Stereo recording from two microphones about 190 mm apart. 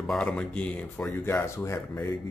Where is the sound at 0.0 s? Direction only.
5° left (ahead or behind).